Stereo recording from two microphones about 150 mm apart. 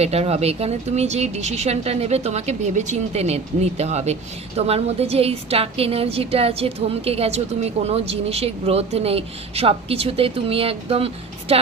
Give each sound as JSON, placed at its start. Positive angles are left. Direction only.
{"t": 0.0, "sound": "speech", "side_deg": -45}